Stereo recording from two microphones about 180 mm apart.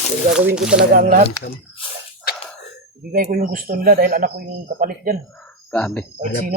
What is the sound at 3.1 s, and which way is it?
Speech, 55° right (ahead or behind).